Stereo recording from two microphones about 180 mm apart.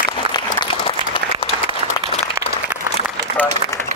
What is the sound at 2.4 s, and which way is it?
Applause, 15° right (ahead or behind).